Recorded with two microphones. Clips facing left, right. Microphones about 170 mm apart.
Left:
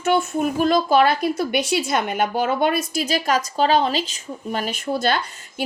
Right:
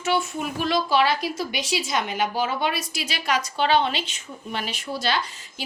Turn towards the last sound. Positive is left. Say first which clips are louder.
# left 3 dB
turn(degrees=50)  # may be behind; listen again after turning